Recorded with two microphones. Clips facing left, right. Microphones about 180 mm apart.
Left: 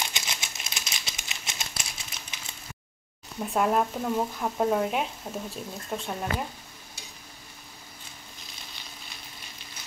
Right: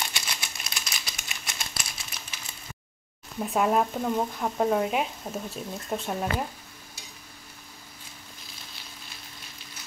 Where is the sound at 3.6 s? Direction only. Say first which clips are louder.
Right 1 dB; centre (ahead or behind).